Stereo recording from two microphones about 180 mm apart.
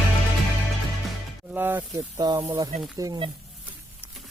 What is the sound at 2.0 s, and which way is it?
Speech, 20° right (ahead or behind).